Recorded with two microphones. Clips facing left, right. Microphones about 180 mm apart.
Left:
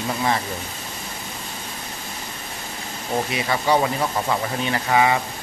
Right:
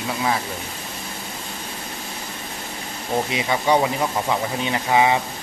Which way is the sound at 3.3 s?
15° right (ahead or behind).